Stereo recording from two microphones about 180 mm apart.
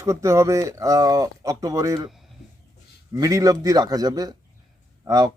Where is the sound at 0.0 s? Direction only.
15° right (ahead or behind).